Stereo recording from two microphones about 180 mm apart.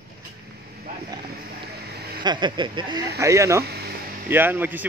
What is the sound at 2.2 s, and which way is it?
A man's voice, 25° right (ahead or behind).